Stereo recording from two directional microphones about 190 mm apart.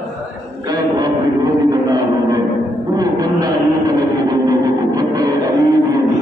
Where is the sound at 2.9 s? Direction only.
20° right (ahead or behind).